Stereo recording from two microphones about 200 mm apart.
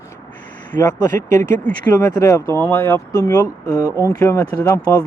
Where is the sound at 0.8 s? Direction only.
20° left (ahead or behind).